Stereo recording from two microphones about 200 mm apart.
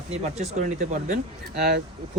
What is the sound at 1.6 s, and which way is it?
Speech, 55° right (ahead or behind).